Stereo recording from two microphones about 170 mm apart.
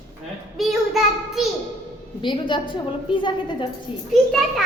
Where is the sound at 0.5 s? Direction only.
Centre (ahead or behind).